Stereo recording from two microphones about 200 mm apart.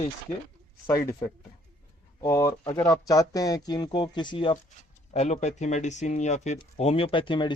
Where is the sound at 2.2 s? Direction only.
15° left (ahead or behind).